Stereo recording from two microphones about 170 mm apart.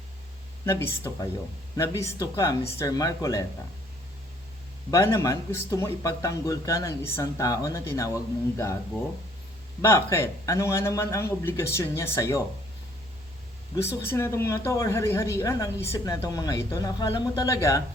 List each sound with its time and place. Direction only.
0.6 s speech: 15° left (ahead or behind)
4.9 s a woman's voice: 20° left (ahead or behind)
9.8 s a woman's voice: 20° left (ahead or behind)
13.8 s a woman's voice: 15° left (ahead or behind)